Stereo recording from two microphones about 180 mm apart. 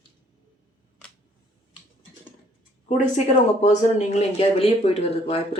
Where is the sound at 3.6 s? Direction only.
40° left (ahead or behind).